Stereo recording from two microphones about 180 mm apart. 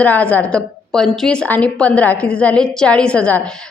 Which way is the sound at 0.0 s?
10° left (ahead or behind).